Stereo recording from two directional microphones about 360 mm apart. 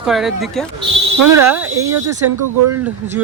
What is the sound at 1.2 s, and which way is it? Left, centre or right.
Speech, right.